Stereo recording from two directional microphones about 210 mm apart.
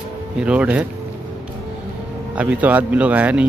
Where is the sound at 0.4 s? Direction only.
5° right (ahead or behind).